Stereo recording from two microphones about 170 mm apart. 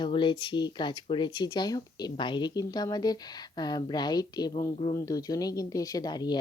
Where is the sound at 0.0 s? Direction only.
30° left (ahead or behind).